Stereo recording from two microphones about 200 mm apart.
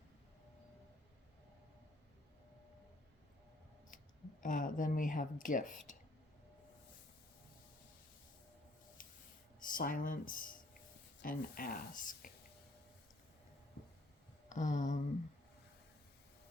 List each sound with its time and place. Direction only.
4.4 s speech: 40° left (ahead or behind)
9.0 s spray: 45° left (ahead or behind)
9.6 s speech: 45° left (ahead or behind)
14.5 s speech: 40° left (ahead or behind)